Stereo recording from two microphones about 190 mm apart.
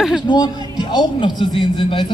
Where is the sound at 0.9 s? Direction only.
25° left (ahead or behind).